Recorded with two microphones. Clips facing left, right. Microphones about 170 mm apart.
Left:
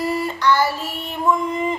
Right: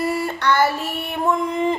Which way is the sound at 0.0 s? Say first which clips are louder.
Left 1 dB; 60° right (ahead or behind).